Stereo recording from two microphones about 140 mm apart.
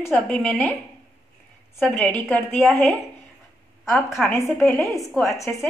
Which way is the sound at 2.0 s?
10° left (ahead or behind).